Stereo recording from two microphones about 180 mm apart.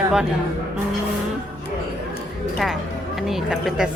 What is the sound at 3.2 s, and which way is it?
Speech, centre (ahead or behind).